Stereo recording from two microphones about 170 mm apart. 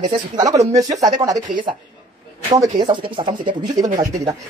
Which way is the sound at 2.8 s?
30° right (ahead or behind).